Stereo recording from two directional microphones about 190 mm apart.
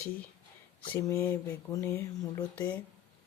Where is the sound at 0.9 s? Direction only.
15° left (ahead or behind).